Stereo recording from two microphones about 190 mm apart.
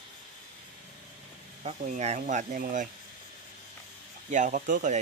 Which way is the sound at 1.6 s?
40° right (ahead or behind).